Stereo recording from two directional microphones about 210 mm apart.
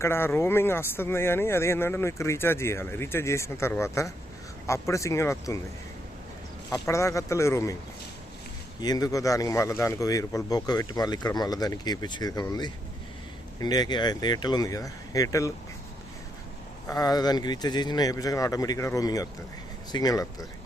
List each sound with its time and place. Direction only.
0.0 s speech: 10° left (ahead or behind)
6.7 s speech: 15° left (ahead or behind)
8.8 s speech: 20° left (ahead or behind)
16.9 s speech: 20° left (ahead or behind)